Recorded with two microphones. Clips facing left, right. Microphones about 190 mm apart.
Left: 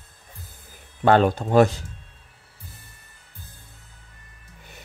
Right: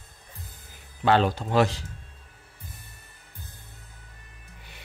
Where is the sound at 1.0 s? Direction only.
50° left (ahead or behind).